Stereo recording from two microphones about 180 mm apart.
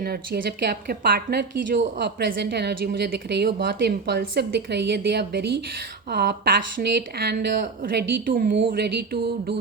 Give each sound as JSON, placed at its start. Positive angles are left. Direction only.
{"t": 0.0, "sound": "a woman's voice", "side_deg": -55}
{"t": 8.7, "sound": "a woman's voice", "side_deg": -65}